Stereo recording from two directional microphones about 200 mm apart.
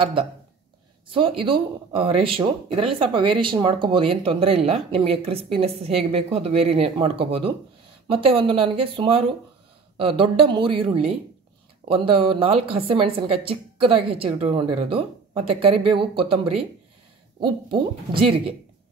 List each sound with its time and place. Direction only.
0.0 s speech: 25° right (ahead or behind)